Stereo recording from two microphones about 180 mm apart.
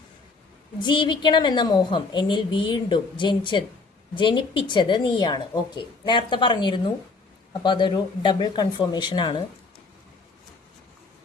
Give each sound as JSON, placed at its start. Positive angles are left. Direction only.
{"t": 0.8, "sound": "a woman's voice", "side_deg": 25}